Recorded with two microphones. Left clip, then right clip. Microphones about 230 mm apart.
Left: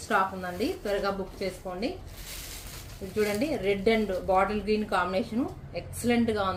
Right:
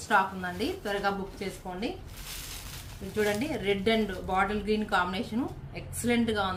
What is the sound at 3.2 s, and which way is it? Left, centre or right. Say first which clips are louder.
Speech: left 1 dB; centre.